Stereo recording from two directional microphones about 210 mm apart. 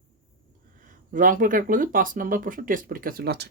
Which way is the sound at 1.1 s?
40° right (ahead or behind).